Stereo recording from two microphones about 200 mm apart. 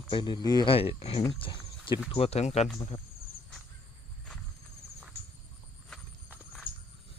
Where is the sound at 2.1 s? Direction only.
30° left (ahead or behind).